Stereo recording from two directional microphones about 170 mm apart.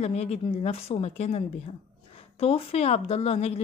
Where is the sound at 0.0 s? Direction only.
40° left (ahead or behind).